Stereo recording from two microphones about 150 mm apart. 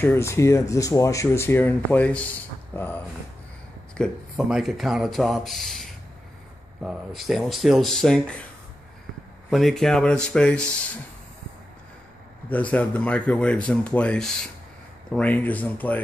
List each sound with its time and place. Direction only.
0.0 s speech: 15° left (ahead or behind)
3.9 s speech: centre (ahead or behind)
9.5 s speech: centre (ahead or behind)
12.4 s speech: 10° left (ahead or behind)